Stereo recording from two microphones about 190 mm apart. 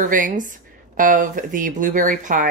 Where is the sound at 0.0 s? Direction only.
45° right (ahead or behind).